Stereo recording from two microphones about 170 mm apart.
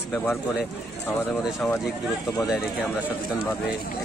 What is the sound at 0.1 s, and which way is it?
Speech, 10° left (ahead or behind).